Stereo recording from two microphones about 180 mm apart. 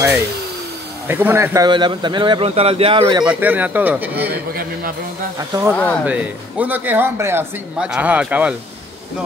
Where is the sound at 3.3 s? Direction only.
10° right (ahead or behind).